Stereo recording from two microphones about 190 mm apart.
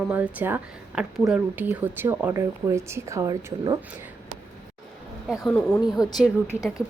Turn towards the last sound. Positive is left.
turn(degrees=15)  # may be behind; listen again after turning